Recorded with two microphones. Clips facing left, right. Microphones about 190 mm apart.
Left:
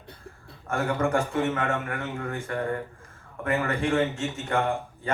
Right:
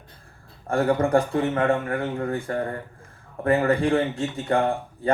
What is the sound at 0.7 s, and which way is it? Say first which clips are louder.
Speech: right 5 dB; 35° right (ahead or behind).